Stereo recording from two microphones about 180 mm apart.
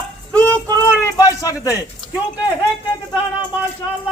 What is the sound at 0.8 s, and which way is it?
Speech, 15° left (ahead or behind).